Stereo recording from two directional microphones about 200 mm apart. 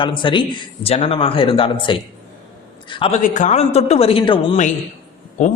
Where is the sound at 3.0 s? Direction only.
35° left (ahead or behind).